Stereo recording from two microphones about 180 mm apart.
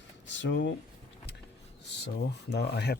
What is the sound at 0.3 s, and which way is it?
Speech, 80° left.